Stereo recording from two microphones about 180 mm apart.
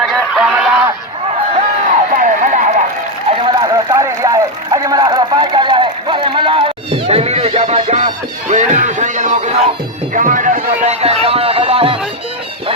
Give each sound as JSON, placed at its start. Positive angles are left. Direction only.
{"t": 0.0, "sound": "honk", "side_deg": 0}
{"t": 1.5, "sound": "run", "side_deg": -45}
{"t": 3.2, "sound": "a sound", "side_deg": -25}